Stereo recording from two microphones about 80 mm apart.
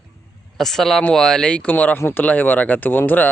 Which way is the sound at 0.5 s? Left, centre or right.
Centre.